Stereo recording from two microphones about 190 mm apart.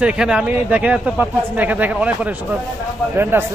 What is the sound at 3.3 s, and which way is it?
Speech, 10° right (ahead or behind).